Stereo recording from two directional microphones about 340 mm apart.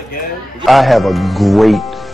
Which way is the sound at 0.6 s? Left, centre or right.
Centre.